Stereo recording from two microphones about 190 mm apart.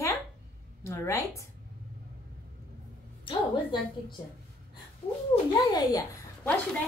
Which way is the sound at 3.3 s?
25° left (ahead or behind).